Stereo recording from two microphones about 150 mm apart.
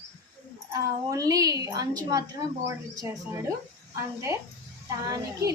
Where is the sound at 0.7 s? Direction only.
25° right (ahead or behind).